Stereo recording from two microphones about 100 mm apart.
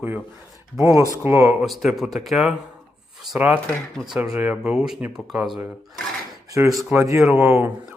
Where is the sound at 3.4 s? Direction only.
15° right (ahead or behind).